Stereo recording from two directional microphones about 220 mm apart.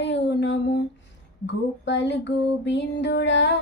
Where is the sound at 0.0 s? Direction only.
50° left (ahead or behind).